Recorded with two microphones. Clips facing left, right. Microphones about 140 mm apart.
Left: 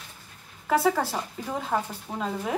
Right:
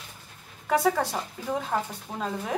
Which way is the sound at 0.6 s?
Centre (ahead or behind).